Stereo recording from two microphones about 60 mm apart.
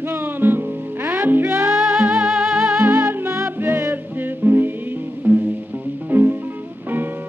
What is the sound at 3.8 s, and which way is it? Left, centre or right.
Music, right.